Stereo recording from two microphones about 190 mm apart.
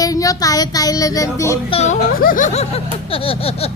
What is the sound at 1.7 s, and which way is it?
A woman's voice, 35° left (ahead or behind).